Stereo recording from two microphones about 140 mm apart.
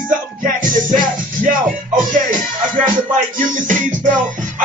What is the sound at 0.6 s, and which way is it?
Music, 70° right (ahead or behind).